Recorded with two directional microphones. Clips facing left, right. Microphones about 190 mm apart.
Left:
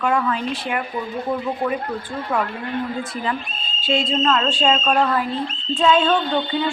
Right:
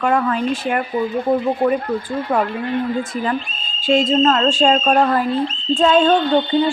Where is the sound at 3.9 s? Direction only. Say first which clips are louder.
Right 5 dB; 40° right (ahead or behind).